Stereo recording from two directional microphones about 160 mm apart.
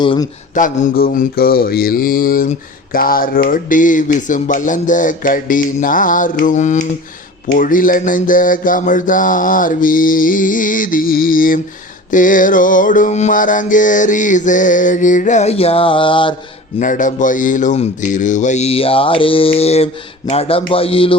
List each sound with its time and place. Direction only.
0.0 s a sound: 30° left (ahead or behind)
0.5 s mantra: 55° left (ahead or behind)
12.1 s music: 55° left (ahead or behind); by 16.3 s 30° left (ahead or behind)
16.8 s speech: 55° left (ahead or behind); by 21.2 s 35° left (ahead or behind)